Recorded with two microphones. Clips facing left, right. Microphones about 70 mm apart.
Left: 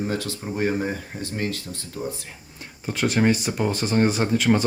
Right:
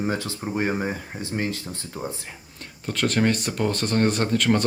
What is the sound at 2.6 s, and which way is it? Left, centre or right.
Speech, centre.